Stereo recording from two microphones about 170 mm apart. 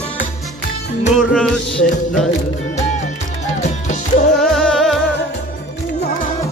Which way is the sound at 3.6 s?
45° left (ahead or behind).